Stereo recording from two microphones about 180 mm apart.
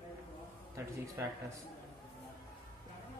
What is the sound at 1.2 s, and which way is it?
Speech, 15° right (ahead or behind).